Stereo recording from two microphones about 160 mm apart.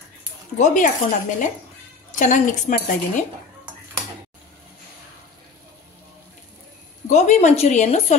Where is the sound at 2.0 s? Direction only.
50° left (ahead or behind).